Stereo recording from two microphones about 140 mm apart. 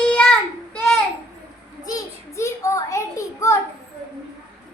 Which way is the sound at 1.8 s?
25° left (ahead or behind).